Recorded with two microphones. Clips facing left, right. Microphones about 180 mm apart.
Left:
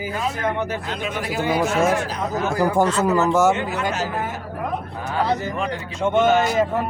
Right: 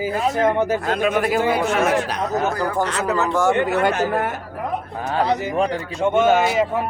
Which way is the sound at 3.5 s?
60° right (ahead or behind).